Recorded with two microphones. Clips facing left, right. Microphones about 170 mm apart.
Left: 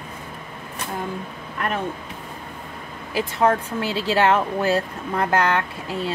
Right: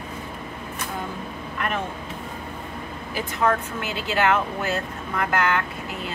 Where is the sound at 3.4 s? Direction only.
30° left (ahead or behind).